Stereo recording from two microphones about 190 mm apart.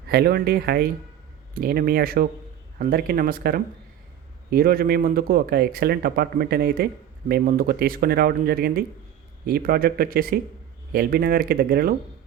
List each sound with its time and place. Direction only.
0.1 s speech: 55° right (ahead or behind)